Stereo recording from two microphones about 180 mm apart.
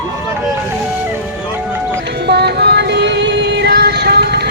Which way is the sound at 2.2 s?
65° right (ahead or behind).